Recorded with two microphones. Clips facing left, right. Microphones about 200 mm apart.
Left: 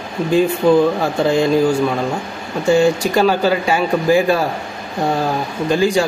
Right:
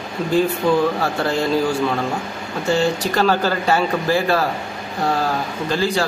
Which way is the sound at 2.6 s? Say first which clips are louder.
Left 5 dB; 15° left (ahead or behind).